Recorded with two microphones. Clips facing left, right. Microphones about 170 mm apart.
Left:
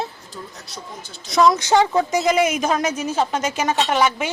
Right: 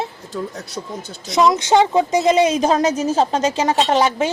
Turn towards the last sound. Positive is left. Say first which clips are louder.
# right 3 dB
turn(degrees=-30)  # may be behind; listen again after turning